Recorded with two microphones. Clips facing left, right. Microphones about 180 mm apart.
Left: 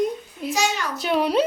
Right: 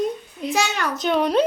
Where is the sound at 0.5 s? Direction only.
60° right (ahead or behind).